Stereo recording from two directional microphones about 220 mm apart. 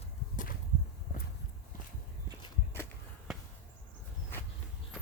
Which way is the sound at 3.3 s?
Centre (ahead or behind).